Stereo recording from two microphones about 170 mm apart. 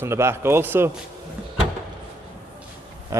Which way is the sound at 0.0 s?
15° right (ahead or behind).